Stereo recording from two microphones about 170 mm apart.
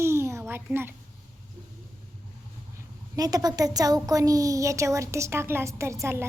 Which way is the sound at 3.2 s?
20° right (ahead or behind).